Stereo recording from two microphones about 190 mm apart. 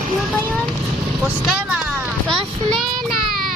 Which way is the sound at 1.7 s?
Centre (ahead or behind).